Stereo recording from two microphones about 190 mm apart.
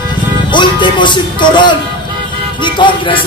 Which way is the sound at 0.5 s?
25° left (ahead or behind).